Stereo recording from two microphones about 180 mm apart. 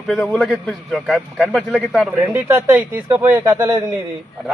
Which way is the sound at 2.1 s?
10° right (ahead or behind).